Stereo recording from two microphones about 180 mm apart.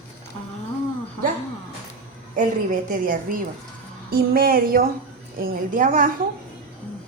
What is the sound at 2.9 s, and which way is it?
A woman's voice, 50° right (ahead or behind).